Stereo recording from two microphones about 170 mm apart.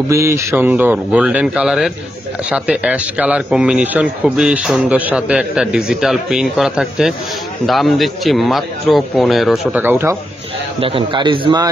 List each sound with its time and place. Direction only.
0.1 s a man's voice: 15° right (ahead or behind)
10.8 s a man's voice: 30° right (ahead or behind)